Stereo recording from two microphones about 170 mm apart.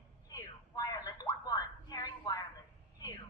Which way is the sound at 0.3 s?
20° left (ahead or behind).